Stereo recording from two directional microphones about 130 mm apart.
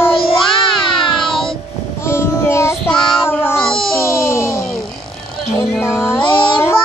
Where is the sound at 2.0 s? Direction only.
20° left (ahead or behind).